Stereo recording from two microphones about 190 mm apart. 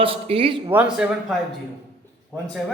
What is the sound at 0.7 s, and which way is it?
Speech, 5° right (ahead or behind).